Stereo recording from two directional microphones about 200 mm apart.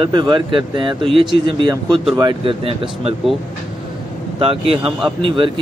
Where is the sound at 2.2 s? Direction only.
25° right (ahead or behind).